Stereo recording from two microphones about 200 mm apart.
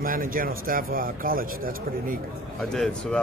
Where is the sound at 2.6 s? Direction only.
5° left (ahead or behind).